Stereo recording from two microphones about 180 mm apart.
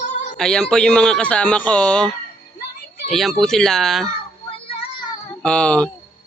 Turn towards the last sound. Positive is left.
turn(degrees=5)  # may be behind; listen again after turning